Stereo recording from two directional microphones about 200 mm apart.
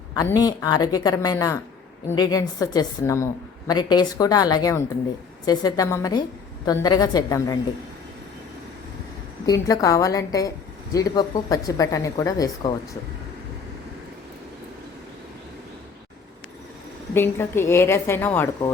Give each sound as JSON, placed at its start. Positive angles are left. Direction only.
{"t": 0.2, "sound": "a woman's voice", "side_deg": 20}
{"t": 9.5, "sound": "speech", "side_deg": 15}
{"t": 17.2, "sound": "speech", "side_deg": 10}